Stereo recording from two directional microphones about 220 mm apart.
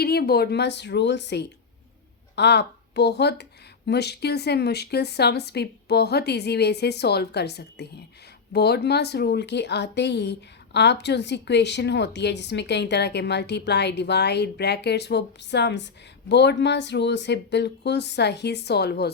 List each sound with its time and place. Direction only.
0.0 s a woman's voice: 45° left (ahead or behind)